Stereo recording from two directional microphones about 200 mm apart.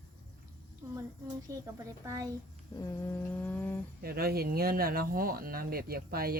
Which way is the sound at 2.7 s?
20° left (ahead or behind).